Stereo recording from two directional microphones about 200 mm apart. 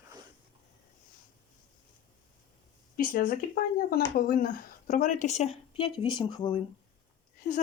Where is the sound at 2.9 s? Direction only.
45° left (ahead or behind); by 6.6 s 25° left (ahead or behind).